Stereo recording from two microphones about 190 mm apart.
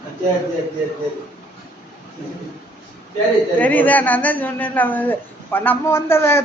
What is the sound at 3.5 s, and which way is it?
Speech, 10° left (ahead or behind).